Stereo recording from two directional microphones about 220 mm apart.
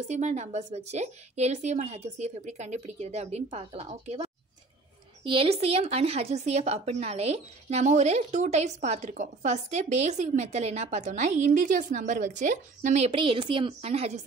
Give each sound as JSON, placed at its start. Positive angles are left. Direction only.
{"t": 0.1, "sound": "speech", "side_deg": -30}